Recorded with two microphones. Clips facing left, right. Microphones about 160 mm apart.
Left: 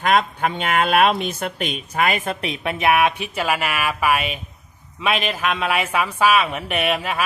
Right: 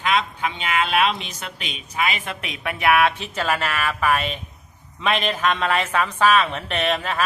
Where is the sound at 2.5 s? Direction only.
20° left (ahead or behind).